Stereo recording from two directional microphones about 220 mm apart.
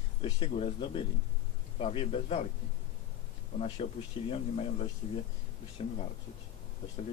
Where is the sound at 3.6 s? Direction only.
25° left (ahead or behind).